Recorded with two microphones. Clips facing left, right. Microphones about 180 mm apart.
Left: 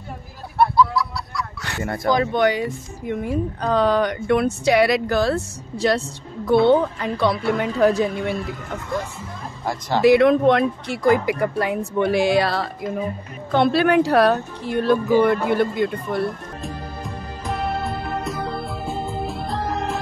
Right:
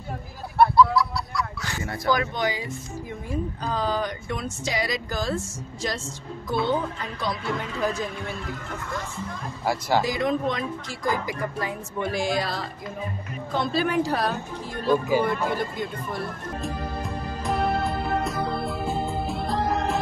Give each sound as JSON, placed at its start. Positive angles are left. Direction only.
{"t": 0.6, "sound": "goose", "side_deg": 0}
{"t": 1.6, "sound": "fowl", "side_deg": 65}
{"t": 2.3, "sound": "speech", "side_deg": 65}
{"t": 9.7, "sound": "speech", "side_deg": -10}
{"t": 10.0, "sound": "speech", "side_deg": 70}
{"t": 17.5, "sound": "music", "side_deg": 0}